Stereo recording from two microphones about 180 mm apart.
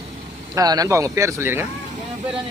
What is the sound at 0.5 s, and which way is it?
Speech, 20° right (ahead or behind).